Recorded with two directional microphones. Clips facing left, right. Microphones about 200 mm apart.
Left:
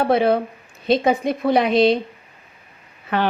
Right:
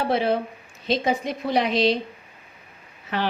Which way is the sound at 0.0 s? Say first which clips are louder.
Left 5 dB; 55° left (ahead or behind).